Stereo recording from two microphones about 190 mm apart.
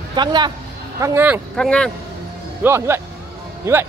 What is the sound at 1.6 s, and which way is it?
Speech, 5° left (ahead or behind).